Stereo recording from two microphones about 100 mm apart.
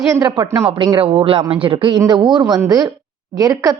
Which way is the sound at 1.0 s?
70° right (ahead or behind).